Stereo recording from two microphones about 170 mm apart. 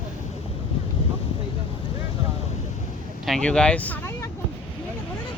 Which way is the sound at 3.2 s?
5° left (ahead or behind).